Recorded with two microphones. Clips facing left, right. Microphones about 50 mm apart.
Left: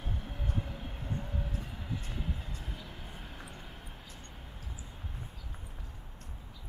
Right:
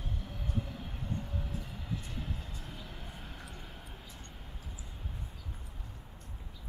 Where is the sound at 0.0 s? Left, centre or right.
Centre.